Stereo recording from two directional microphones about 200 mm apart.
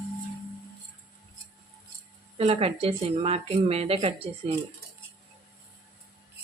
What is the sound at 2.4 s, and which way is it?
Speech, 30° right (ahead or behind).